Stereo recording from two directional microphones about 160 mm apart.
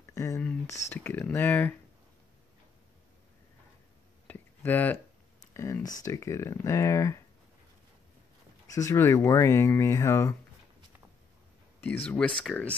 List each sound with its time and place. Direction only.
0.1 s a sound: 20° left (ahead or behind)
0.4 s speech: 15° left (ahead or behind)
4.3 s a sound: 10° left (ahead or behind)
5.5 s speech: 20° left (ahead or behind)
8.6 s speech: 20° left (ahead or behind)
11.8 s speech: 10° left (ahead or behind)